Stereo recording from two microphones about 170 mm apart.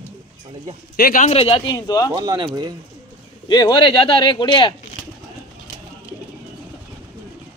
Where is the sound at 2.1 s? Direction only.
25° right (ahead or behind).